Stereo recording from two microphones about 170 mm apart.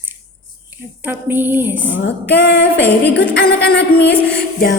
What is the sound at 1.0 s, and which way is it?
Speech, 10° right (ahead or behind).